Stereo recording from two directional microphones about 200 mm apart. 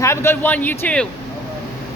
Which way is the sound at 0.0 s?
15° left (ahead or behind).